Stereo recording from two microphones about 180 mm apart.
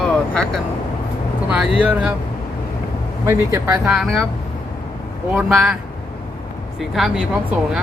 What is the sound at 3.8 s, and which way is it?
Speech, centre (ahead or behind).